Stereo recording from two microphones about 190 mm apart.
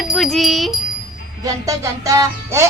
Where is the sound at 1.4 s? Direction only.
15° right (ahead or behind).